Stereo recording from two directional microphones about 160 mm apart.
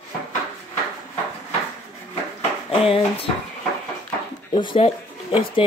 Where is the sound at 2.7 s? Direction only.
35° left (ahead or behind).